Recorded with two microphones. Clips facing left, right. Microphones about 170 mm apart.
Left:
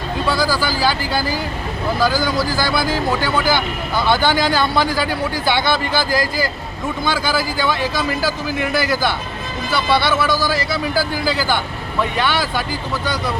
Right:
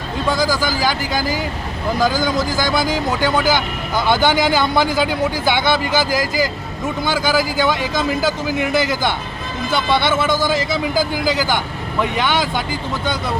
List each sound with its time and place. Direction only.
0.3 s speech: 15° right (ahead or behind)